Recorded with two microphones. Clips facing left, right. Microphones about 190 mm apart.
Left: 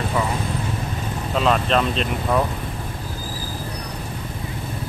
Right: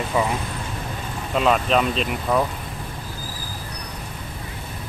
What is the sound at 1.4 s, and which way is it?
Speech, 5° right (ahead or behind).